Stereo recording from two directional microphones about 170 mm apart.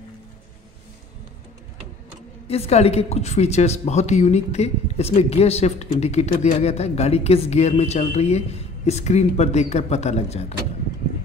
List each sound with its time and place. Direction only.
2.4 s a woman's voice: 35° left (ahead or behind)